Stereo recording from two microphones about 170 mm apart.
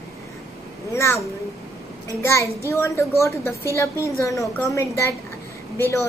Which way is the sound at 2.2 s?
15° left (ahead or behind).